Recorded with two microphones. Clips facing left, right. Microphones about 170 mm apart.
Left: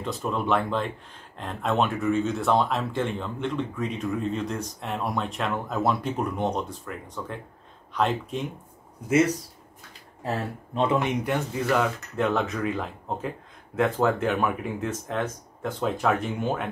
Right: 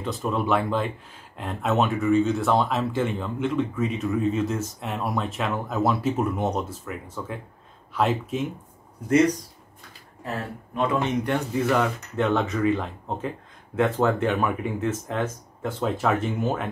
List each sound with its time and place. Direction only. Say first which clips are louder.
0.0 s speech: right 2 dB; centre (ahead or behind)
10.2 s speech: left 2 dB; 25° left (ahead or behind)
11.0 s speech: right 1 dB; 10° left (ahead or behind)
11.3 s speech: right 2 dB; centre (ahead or behind)